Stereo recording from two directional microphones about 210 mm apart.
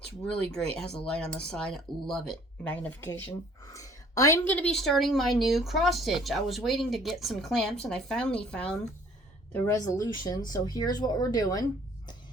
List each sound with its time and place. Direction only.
0.8 s speech: 5° left (ahead or behind)
9.5 s speech: 15° left (ahead or behind)